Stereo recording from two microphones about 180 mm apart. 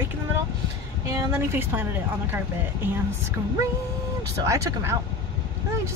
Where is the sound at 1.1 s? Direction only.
15° right (ahead or behind).